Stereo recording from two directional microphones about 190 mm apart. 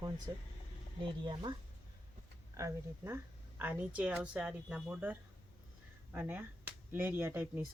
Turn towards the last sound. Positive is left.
turn(degrees=-10)  # may be behind; listen again after turning